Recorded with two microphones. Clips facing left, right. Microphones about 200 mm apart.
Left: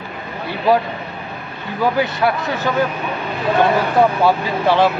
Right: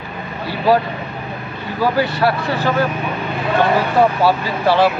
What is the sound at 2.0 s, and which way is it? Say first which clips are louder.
Speech: right 1 dB; 20° left (ahead or behind).